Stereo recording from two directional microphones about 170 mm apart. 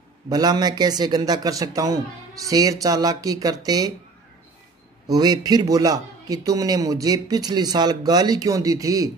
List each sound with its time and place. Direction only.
0.3 s a man's voice: 25° right (ahead or behind)
5.0 s a man's voice: 20° right (ahead or behind)